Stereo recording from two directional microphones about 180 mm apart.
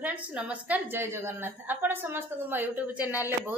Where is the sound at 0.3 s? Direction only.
5° right (ahead or behind).